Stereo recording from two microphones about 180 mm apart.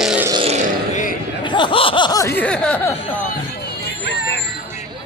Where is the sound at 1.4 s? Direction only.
25° left (ahead or behind).